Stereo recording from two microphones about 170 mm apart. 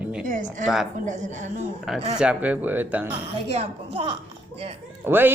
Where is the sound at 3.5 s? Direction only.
35° right (ahead or behind).